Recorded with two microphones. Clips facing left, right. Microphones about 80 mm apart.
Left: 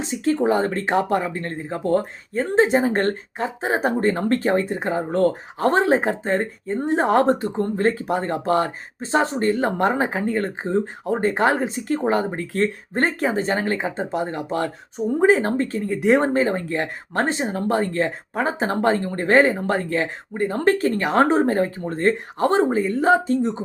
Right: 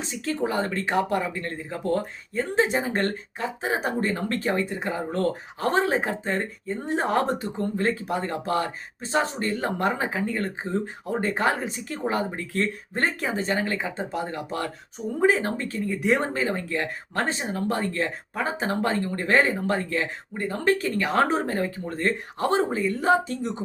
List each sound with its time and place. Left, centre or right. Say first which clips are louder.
0.0 s speech: left 7 dB; left